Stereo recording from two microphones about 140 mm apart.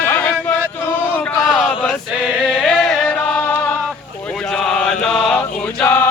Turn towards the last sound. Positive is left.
turn(degrees=15)  # may be behind; listen again after turning